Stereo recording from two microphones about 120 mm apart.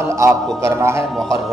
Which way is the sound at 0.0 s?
20° right (ahead or behind).